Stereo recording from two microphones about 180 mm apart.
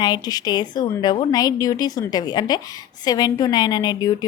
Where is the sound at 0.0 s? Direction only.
20° left (ahead or behind).